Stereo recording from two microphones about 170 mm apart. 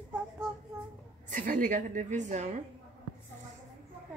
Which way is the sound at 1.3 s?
50° right (ahead or behind).